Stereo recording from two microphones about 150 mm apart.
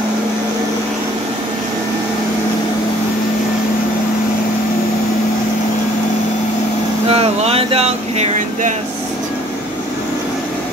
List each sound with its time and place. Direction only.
7.1 s vehicle: 40° right (ahead or behind)